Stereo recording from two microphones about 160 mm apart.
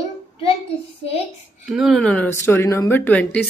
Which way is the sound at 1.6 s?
5° right (ahead or behind).